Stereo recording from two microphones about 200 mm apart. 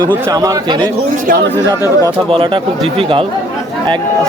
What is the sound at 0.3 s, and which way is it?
Speech, 15° right (ahead or behind).